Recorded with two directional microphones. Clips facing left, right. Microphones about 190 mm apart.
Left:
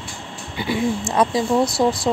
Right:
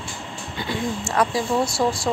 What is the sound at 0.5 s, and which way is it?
Speech, 10° left (ahead or behind).